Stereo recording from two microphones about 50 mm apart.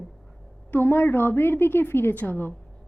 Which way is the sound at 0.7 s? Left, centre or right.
Left.